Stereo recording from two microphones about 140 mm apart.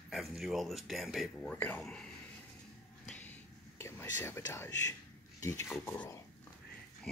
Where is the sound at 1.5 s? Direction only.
15° left (ahead or behind).